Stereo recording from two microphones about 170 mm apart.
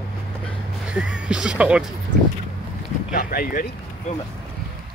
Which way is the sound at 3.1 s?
60° left (ahead or behind).